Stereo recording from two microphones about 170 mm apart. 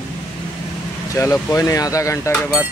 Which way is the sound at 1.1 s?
20° left (ahead or behind).